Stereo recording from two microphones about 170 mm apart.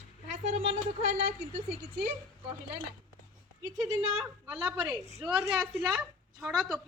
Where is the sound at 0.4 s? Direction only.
40° right (ahead or behind).